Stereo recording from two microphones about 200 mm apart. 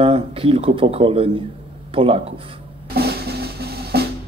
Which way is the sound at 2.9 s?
50° right (ahead or behind).